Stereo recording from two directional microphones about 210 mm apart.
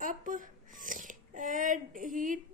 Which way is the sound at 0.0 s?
40° right (ahead or behind).